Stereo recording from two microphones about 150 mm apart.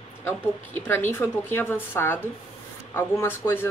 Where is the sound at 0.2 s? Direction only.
15° left (ahead or behind).